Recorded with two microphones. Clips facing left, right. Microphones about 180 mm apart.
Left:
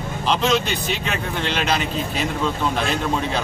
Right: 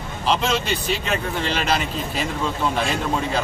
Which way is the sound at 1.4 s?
Centre (ahead or behind).